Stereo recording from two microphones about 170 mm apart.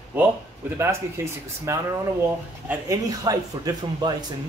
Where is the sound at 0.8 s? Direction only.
15° right (ahead or behind).